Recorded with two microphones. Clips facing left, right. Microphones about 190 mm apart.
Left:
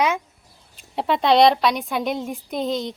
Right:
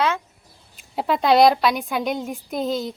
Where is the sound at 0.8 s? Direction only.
Centre (ahead or behind).